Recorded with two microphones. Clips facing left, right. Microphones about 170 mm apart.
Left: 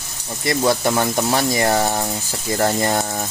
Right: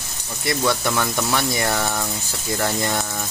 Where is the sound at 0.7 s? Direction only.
35° left (ahead or behind).